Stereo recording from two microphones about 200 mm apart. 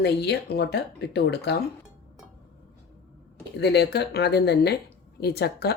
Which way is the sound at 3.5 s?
55° left (ahead or behind).